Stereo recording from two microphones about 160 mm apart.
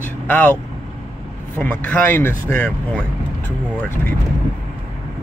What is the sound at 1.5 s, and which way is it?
Speech, 10° left (ahead or behind).